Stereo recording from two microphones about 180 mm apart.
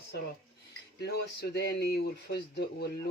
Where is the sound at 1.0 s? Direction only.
65° left (ahead or behind).